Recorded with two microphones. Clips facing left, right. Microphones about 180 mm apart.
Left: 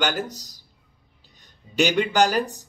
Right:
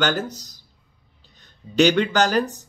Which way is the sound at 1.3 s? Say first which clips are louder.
Right 4 dB; 10° left (ahead or behind).